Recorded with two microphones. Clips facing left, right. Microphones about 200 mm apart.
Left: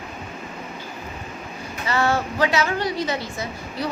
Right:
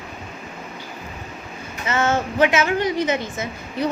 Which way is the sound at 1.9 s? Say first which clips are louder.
Right 1 dB; 20° right (ahead or behind).